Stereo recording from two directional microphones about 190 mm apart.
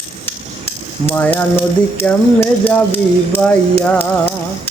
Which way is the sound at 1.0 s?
10° left (ahead or behind).